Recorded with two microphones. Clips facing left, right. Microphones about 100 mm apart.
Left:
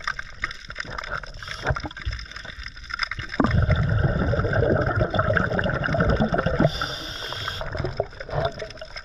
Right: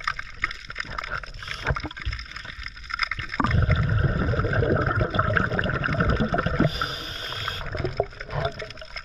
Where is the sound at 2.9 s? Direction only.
20° left (ahead or behind).